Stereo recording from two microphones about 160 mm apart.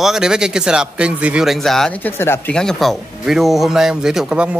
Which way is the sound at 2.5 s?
5° left (ahead or behind).